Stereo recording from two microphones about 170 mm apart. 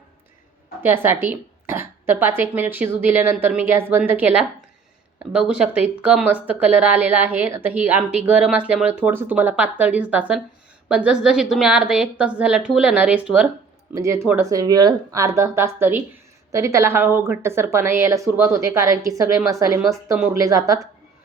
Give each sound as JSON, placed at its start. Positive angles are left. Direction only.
{"t": 0.8, "sound": "a woman's voice", "side_deg": -10}
{"t": 14.0, "sound": "a woman's voice", "side_deg": -15}